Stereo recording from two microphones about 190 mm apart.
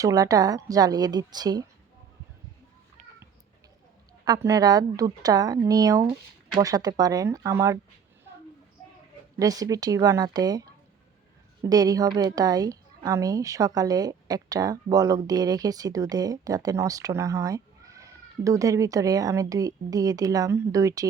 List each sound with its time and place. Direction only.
0.0 s a woman's voice: 20° right (ahead or behind)
4.4 s a woman's voice: 20° right (ahead or behind)
9.4 s a woman's voice: 20° right (ahead or behind)